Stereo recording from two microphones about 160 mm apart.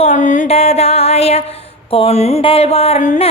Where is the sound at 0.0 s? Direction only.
50° left (ahead or behind).